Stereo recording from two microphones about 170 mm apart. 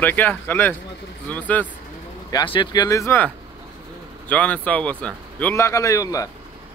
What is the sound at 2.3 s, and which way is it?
A man's voice, 30° left (ahead or behind).